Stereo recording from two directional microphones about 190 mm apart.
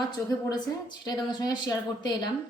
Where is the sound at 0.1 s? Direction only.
20° left (ahead or behind).